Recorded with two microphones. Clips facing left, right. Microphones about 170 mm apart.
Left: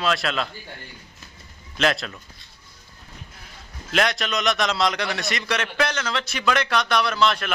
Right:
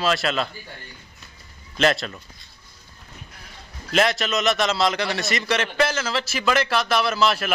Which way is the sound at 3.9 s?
Centre (ahead or behind).